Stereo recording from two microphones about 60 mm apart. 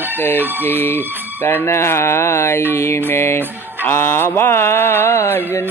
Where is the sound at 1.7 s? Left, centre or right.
Left.